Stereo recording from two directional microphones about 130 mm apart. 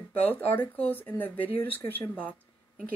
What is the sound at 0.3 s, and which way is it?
Speech, 15° left (ahead or behind).